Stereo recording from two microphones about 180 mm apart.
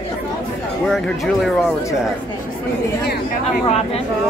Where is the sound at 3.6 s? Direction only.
35° left (ahead or behind).